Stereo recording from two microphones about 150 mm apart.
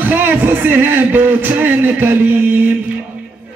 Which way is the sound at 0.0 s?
10° right (ahead or behind).